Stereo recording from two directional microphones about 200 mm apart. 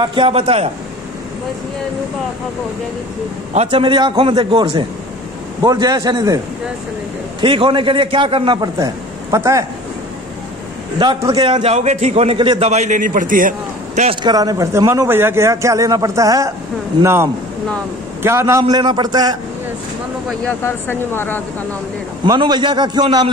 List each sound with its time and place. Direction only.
0.0 s a man's voice: 25° right (ahead or behind)
3.5 s a man's voice: 25° right (ahead or behind)
7.4 s a man's voice: 25° right (ahead or behind)
11.0 s a man's voice: 20° right (ahead or behind); by 14.1 s 40° right (ahead or behind)
14.2 s a man's voice: 20° right (ahead or behind)
20.2 s speech: 10° left (ahead or behind)
22.2 s a man's voice: 20° right (ahead or behind)